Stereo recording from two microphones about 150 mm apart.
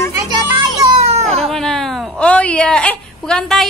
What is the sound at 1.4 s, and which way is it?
Speech, 5° left (ahead or behind).